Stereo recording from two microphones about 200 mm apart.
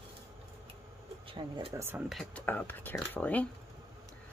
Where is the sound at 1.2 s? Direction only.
25° right (ahead or behind).